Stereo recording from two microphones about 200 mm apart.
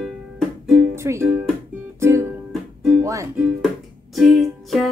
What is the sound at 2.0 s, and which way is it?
Music, 15° right (ahead or behind).